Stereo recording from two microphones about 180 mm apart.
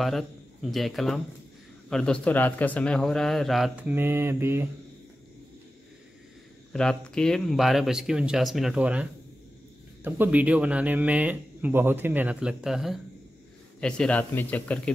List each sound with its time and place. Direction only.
0.0 s a man's voice: centre (ahead or behind)
6.7 s a man's voice: 5° left (ahead or behind)
10.0 s speech: 10° right (ahead or behind); by 14.8 s 10° left (ahead or behind)